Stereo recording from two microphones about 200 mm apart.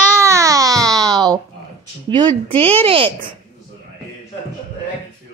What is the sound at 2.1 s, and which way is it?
Speech, 20° right (ahead or behind).